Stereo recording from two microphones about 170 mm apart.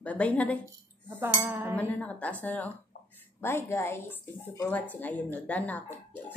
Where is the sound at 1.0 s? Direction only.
10° right (ahead or behind).